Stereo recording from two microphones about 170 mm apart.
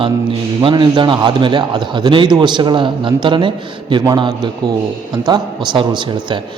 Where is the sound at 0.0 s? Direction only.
30° right (ahead or behind).